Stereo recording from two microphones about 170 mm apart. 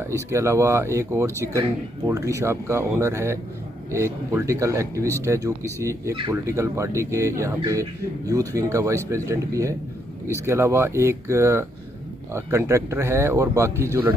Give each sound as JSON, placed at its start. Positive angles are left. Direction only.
{"t": 0.3, "sound": "speech", "side_deg": -15}